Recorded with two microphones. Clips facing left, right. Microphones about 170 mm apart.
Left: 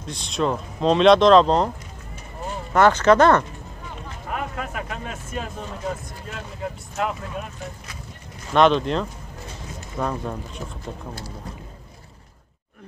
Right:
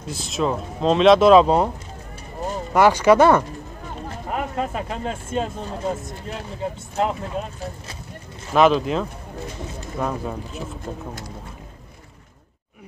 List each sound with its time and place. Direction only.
0.0 s speech: 5° right (ahead or behind)
2.7 s speech: 10° right (ahead or behind)
4.3 s speech: 30° right (ahead or behind)
8.5 s speech: 5° right (ahead or behind)